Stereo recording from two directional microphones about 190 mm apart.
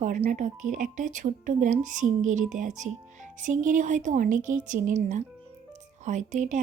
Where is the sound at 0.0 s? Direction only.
40° right (ahead or behind).